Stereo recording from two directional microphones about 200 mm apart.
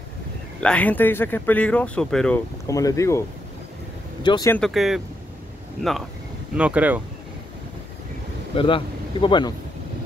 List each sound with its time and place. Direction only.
0.6 s speech: 5° left (ahead or behind)
2.7 s speech: 15° left (ahead or behind)
4.5 s speech: 5° left (ahead or behind)
8.5 s speech: 25° left (ahead or behind)